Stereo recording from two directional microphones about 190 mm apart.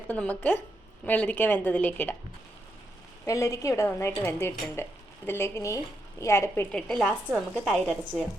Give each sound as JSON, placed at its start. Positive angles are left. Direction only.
{"t": 0.1, "sound": "a woman's voice", "side_deg": 10}
{"t": 3.2, "sound": "a woman's voice", "side_deg": 15}